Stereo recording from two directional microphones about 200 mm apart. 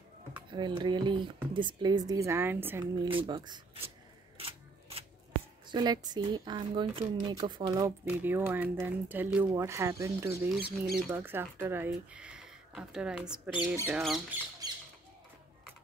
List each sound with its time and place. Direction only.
0.5 s speech: 20° right (ahead or behind)
2.8 s speech: 25° right (ahead or behind)
4.4 s scissors: 30° right (ahead or behind)
5.7 s speech: 20° right (ahead or behind); by 14.2 s 5° right (ahead or behind)
14.6 s squawk: 20° right (ahead or behind)